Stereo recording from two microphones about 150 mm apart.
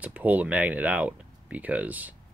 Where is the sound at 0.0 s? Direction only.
10° right (ahead or behind).